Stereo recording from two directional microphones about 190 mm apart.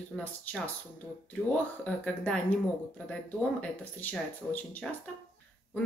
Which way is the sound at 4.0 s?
10° left (ahead or behind).